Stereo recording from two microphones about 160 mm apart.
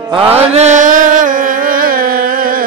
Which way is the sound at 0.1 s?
35° right (ahead or behind).